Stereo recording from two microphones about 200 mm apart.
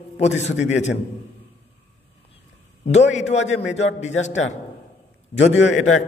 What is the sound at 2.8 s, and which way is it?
A man's voice, 35° left (ahead or behind).